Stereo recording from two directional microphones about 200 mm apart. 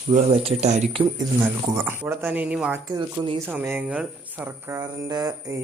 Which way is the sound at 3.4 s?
10° right (ahead or behind).